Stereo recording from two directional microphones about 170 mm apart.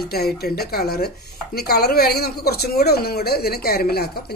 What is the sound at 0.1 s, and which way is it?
Speech, 70° left (ahead or behind).